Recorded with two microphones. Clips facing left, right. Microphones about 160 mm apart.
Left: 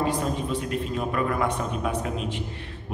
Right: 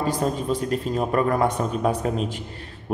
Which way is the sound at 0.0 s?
40° right (ahead or behind).